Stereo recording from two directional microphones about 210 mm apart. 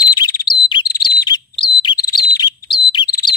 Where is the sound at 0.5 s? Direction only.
20° left (ahead or behind).